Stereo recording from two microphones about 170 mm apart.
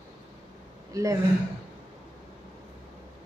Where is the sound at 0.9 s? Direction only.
20° right (ahead or behind).